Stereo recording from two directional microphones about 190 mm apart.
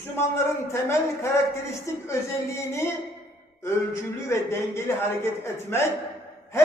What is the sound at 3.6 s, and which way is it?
A man's voice, 15° left (ahead or behind).